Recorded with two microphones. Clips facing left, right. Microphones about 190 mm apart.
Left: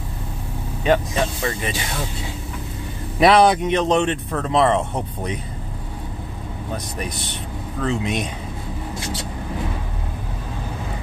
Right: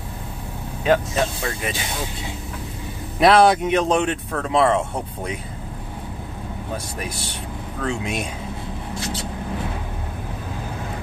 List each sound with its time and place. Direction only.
0.8 s speech: centre (ahead or behind)
3.2 s speech: centre (ahead or behind)
7.8 s speech: centre (ahead or behind)